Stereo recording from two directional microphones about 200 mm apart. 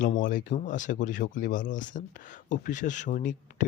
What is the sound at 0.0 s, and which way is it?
Speech, 40° left (ahead or behind).